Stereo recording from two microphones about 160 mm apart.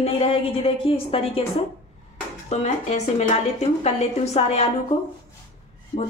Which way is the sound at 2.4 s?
45° left (ahead or behind).